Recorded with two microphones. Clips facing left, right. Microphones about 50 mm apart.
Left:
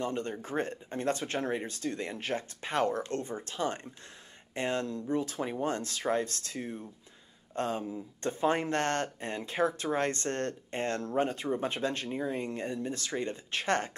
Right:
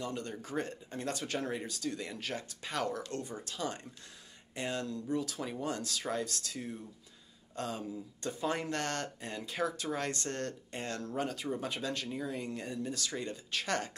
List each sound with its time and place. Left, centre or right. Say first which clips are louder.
0.0 s speech: left 5 dB; left